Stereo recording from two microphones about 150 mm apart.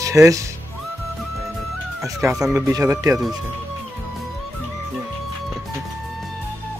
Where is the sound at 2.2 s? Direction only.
15° right (ahead or behind).